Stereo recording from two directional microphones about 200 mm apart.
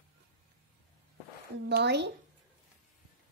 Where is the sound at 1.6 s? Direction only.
55° right (ahead or behind).